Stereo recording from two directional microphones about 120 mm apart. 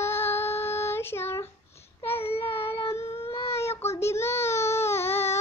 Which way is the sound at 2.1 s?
55° left (ahead or behind).